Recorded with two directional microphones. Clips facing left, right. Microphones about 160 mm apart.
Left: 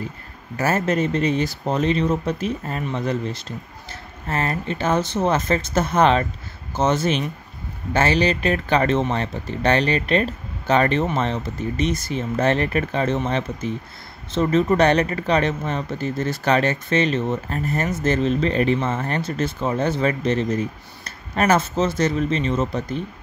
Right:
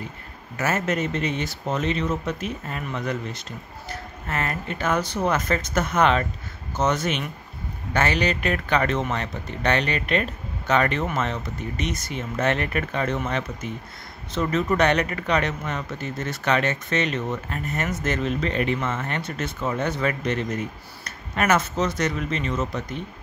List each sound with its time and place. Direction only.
0.6 s speech: 30° left (ahead or behind)